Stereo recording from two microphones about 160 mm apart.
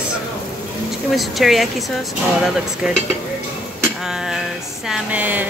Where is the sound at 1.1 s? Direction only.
Centre (ahead or behind).